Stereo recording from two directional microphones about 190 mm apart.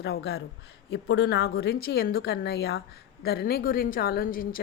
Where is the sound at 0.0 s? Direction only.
60° left (ahead or behind).